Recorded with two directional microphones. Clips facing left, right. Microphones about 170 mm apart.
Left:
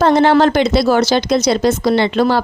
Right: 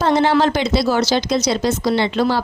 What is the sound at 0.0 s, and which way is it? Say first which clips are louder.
Speech: left 4 dB; 60° left (ahead or behind).